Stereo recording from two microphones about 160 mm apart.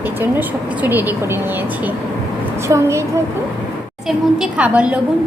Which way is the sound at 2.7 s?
20° right (ahead or behind).